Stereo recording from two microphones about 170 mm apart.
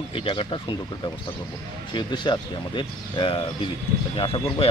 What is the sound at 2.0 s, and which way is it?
Speech, 25° left (ahead or behind).